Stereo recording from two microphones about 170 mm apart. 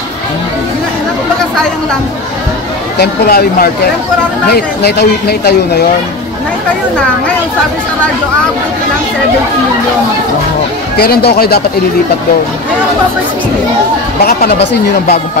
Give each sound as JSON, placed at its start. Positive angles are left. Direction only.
{"t": 3.0, "sound": "speech", "side_deg": 70}
{"t": 11.0, "sound": "speech", "side_deg": 65}
{"t": 14.2, "sound": "speech", "side_deg": 80}